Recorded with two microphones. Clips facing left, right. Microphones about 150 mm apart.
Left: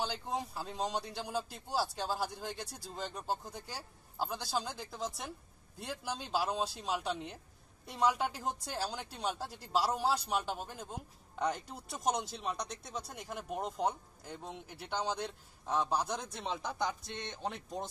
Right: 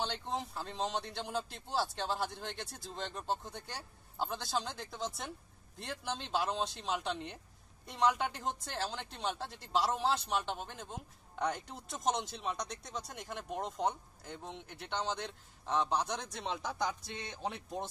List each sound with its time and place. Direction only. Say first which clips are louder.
0.0 s a woman's voice: left 1 dB; 5° left (ahead or behind)